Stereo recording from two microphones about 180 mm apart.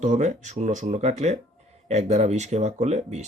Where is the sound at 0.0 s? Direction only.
40° right (ahead or behind).